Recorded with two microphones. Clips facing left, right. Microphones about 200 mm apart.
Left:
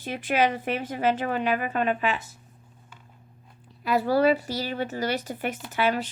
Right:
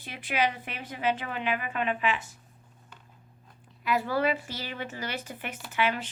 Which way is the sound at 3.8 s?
35° left (ahead or behind).